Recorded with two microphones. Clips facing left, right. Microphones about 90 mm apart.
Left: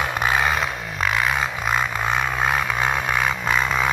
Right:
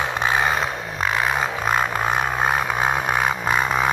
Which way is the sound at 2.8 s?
15° right (ahead or behind).